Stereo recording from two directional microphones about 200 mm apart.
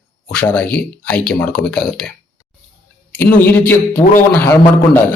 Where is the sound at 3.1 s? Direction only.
10° left (ahead or behind).